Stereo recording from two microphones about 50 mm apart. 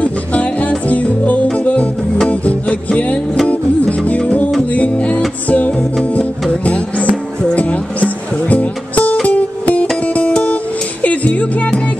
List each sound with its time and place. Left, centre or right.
0.0 s music: left